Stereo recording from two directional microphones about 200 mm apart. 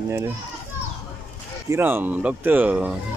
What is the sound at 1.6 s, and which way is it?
Speech, 10° right (ahead or behind).